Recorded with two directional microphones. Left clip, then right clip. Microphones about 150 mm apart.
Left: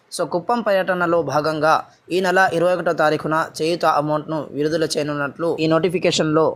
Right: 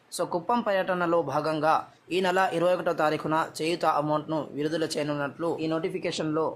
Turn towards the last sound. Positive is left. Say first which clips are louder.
# left 11 dB
turn(degrees=40)  # may be behind; listen again after turning